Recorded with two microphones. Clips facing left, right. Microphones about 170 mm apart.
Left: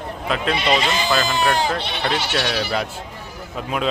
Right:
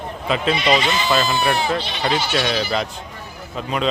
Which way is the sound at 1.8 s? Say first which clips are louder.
Even; 60° left (ahead or behind).